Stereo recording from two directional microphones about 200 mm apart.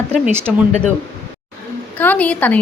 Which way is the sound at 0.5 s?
Centre (ahead or behind).